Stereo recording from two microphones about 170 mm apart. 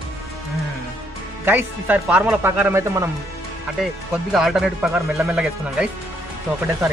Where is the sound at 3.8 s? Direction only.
Centre (ahead or behind).